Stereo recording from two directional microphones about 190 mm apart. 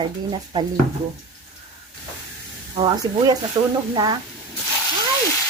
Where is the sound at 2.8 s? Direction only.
20° right (ahead or behind).